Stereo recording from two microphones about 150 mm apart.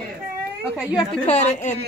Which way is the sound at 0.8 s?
10° right (ahead or behind).